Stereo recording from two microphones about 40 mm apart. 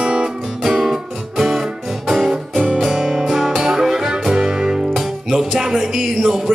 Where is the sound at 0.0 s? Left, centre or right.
Right.